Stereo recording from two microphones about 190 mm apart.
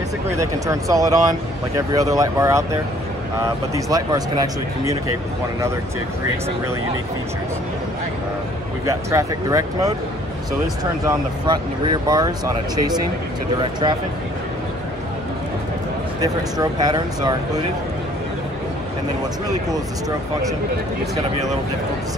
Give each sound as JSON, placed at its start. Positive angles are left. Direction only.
{"t": 0.3, "sound": "speech", "side_deg": -15}
{"t": 8.8, "sound": "speech", "side_deg": -15}
{"t": 16.2, "sound": "speech", "side_deg": -20}